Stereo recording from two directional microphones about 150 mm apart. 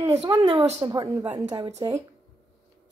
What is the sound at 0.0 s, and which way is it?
Speech, 25° right (ahead or behind).